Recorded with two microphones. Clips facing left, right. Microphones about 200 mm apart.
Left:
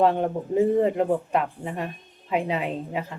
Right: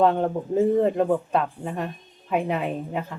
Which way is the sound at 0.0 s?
20° left (ahead or behind).